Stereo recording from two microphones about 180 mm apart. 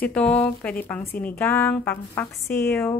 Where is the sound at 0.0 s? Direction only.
5° left (ahead or behind).